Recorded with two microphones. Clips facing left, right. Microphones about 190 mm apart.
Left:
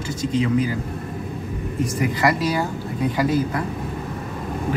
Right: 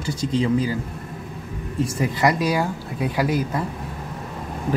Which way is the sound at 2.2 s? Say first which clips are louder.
Right 2 dB; 15° right (ahead or behind).